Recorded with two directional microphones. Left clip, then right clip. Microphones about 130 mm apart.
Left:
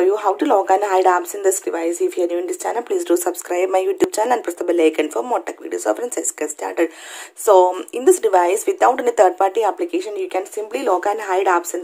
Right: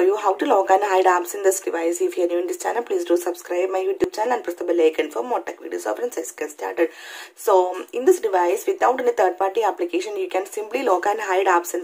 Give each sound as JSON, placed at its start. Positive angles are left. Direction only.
{"t": 0.0, "sound": "speech", "side_deg": 20}